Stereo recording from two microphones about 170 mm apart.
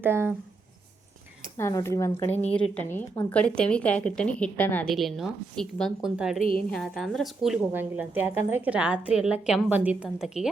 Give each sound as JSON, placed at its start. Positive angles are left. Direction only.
{"t": 0.0, "sound": "a woman's voice", "side_deg": -10}
{"t": 1.5, "sound": "a woman's voice", "side_deg": 15}